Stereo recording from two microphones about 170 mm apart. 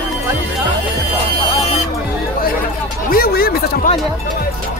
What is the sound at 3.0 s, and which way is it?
Speech, 60° left (ahead or behind).